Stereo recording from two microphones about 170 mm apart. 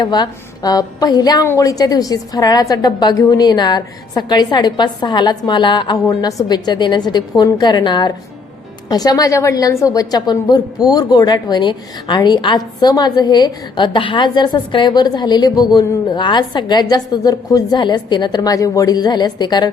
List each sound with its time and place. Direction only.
0.0 s a woman's voice: 25° left (ahead or behind)